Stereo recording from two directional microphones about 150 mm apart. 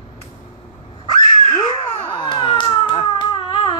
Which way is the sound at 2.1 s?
30° left (ahead or behind).